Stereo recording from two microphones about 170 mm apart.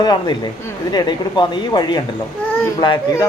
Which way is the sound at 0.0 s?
25° left (ahead or behind).